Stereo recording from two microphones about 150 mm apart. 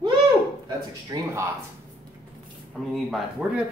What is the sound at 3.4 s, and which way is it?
Speech, 5° right (ahead or behind).